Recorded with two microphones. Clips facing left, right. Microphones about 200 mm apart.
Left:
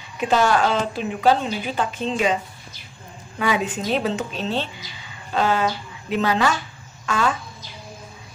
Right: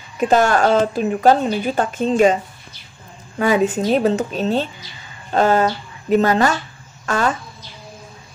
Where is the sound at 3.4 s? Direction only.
45° right (ahead or behind).